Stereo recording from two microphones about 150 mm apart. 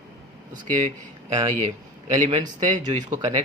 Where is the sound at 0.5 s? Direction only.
55° right (ahead or behind).